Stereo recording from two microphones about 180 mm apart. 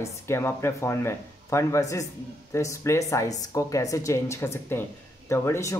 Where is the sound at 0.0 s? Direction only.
15° left (ahead or behind).